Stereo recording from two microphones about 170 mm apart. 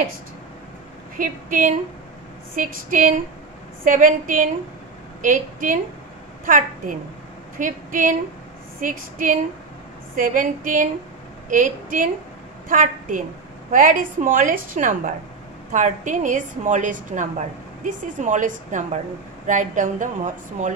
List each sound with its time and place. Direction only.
1.1 s a woman's voice: 55° right (ahead or behind)